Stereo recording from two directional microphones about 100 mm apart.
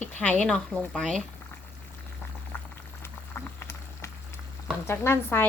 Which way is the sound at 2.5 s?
20° left (ahead or behind).